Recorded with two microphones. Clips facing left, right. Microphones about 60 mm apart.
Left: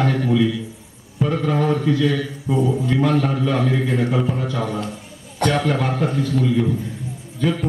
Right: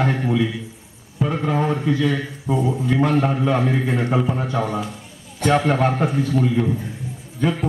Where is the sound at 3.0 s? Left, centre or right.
Right.